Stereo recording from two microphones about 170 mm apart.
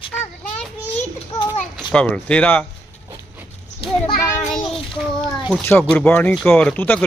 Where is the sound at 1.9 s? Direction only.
5° left (ahead or behind).